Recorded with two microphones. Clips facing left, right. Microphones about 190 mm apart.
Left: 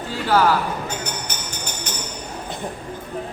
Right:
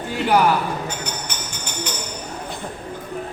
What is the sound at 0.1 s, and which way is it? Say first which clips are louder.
Speech: right 1 dB; 15° right (ahead or behind).